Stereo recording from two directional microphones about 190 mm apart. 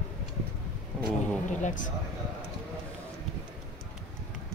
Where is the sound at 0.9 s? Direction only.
Centre (ahead or behind).